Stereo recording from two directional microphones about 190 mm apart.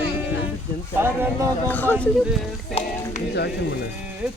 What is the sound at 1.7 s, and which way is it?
Speech, 10° left (ahead or behind).